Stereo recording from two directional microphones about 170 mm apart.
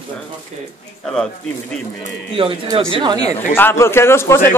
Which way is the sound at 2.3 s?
30° right (ahead or behind).